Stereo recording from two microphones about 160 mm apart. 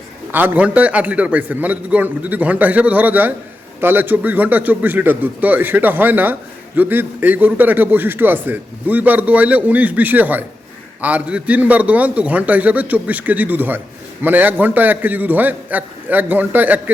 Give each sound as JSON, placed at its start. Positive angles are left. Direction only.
{"t": 0.3, "sound": "a man's voice", "side_deg": -10}